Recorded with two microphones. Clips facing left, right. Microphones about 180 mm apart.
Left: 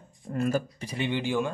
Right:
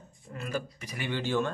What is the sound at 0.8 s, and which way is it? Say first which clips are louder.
Speech: left 4 dB; 25° left (ahead or behind).